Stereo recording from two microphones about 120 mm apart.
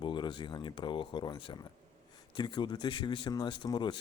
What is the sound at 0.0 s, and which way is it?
A man's voice, 40° left (ahead or behind).